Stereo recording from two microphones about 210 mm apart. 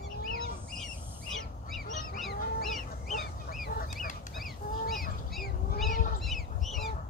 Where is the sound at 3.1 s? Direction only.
45° left (ahead or behind).